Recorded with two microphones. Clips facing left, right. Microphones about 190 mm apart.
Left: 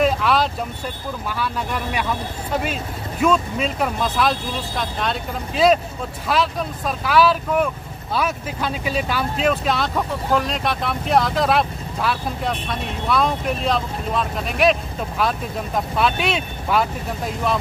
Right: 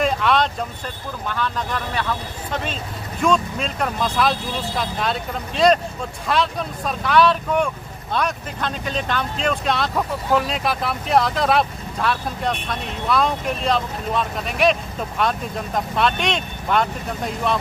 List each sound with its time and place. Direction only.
0.0 s vehicle: 5° left (ahead or behind)
1.3 s speech: 10° left (ahead or behind)